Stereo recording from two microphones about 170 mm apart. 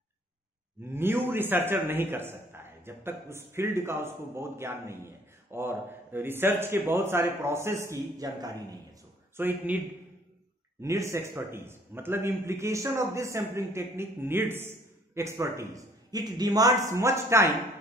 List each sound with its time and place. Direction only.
0.9 s a man's voice: 15° right (ahead or behind)
10.8 s a man's voice: 15° right (ahead or behind)